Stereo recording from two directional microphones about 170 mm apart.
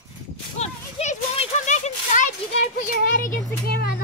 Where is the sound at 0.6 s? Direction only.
40° left (ahead or behind).